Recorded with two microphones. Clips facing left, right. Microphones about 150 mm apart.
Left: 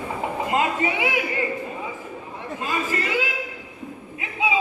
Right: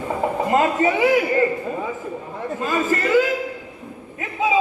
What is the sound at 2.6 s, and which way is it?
Chatter, 45° right (ahead or behind).